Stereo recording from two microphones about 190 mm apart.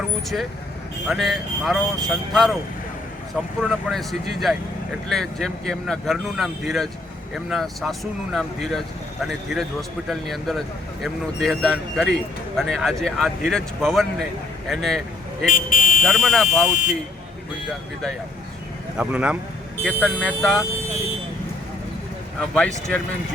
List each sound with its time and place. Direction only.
1.0 s speech: centre (ahead or behind)
3.6 s speech: centre (ahead or behind)
15.5 s a sound: 45° left (ahead or behind)
16.0 s speech: centre (ahead or behind)
18.9 s speech: 5° right (ahead or behind)
22.4 s speech: 5° left (ahead or behind)